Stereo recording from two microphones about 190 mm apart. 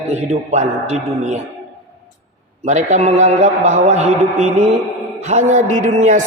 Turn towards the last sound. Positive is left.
turn(degrees=-40)  # may be behind; listen again after turning